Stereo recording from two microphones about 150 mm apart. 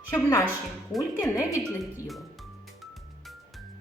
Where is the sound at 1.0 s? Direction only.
20° left (ahead or behind).